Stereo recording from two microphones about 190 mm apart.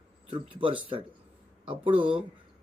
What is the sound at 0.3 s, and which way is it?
Speech, 25° right (ahead or behind).